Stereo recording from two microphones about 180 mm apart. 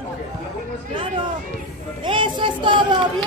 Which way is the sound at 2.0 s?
25° right (ahead or behind).